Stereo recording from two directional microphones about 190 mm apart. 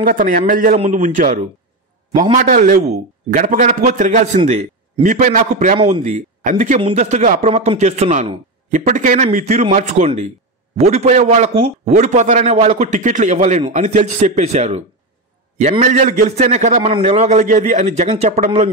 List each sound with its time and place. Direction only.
0.0 s a man's voice: 45° right (ahead or behind)
2.5 s a man's voice: 40° right (ahead or behind)
5.8 s a man's voice: 30° right (ahead or behind)